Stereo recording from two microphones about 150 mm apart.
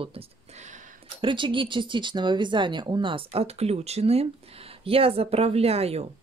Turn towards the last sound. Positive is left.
turn(degrees=-40)  # may be behind; listen again after turning